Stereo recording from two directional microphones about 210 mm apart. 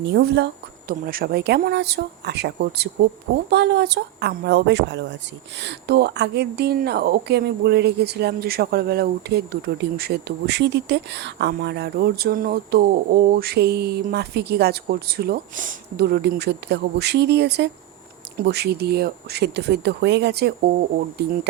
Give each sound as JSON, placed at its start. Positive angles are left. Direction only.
{"t": 0.0, "sound": "a woman's voice", "side_deg": -55}